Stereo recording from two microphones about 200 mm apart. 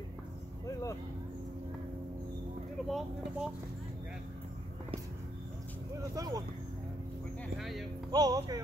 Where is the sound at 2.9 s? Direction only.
5° right (ahead or behind).